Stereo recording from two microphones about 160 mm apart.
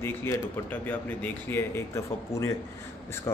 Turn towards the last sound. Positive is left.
turn(degrees=15)  # may be behind; listen again after turning